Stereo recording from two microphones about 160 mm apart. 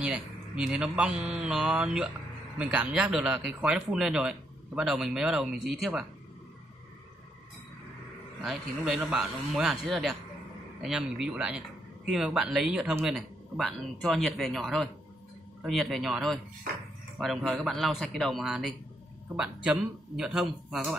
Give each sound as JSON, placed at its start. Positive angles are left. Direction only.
{"t": 0.0, "sound": "a man's voice", "side_deg": -5}
{"t": 8.4, "sound": "speech", "side_deg": 0}